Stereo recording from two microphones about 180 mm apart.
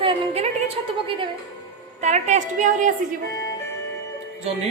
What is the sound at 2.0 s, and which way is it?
Speech, 40° right (ahead or behind).